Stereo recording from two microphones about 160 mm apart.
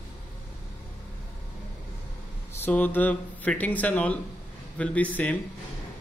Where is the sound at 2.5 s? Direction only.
10° left (ahead or behind).